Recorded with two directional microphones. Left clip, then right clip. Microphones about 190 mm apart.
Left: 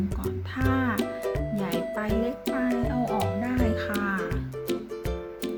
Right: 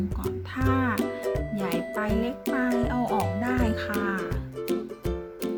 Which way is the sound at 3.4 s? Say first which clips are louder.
Even; 25° right (ahead or behind).